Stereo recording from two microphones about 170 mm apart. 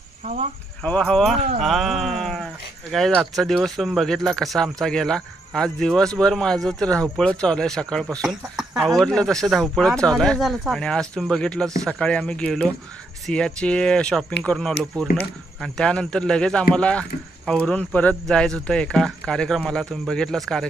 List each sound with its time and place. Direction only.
0.2 s speech: 45° right (ahead or behind)
0.8 s speech: 5° left (ahead or behind)